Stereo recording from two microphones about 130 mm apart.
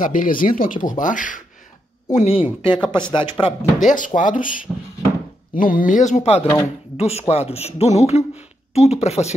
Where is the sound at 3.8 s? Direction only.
80° left.